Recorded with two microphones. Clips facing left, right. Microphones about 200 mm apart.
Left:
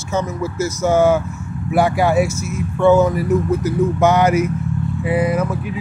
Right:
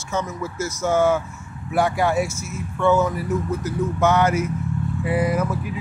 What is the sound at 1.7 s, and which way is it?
Speech, 5° left (ahead or behind).